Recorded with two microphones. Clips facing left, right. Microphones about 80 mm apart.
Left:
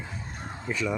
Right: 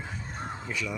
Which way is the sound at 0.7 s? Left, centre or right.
Left.